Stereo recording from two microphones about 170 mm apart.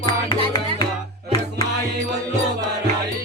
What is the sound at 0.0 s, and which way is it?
Music, 30° left (ahead or behind).